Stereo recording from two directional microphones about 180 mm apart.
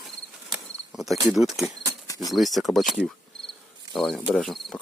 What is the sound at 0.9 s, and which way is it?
Insect, centre (ahead or behind).